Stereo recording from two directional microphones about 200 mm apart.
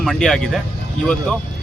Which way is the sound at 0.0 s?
Centre (ahead or behind).